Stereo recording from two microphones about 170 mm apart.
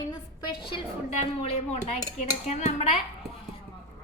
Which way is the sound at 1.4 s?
40° left (ahead or behind).